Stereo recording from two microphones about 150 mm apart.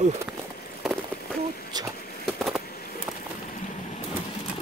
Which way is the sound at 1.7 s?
30° right (ahead or behind).